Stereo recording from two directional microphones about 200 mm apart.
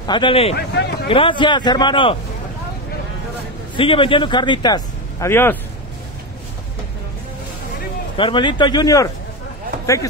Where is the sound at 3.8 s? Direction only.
25° left (ahead or behind).